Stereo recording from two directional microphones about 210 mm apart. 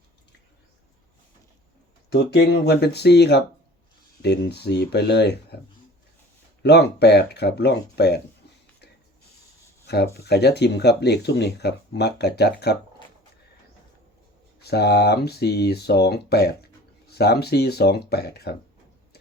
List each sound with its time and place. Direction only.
2.0 s speech: 50° left (ahead or behind)
6.6 s speech: 50° left (ahead or behind)
9.8 s a sound: 50° left (ahead or behind)
10.2 s speech: 50° left (ahead or behind)
14.6 s speech: 50° left (ahead or behind)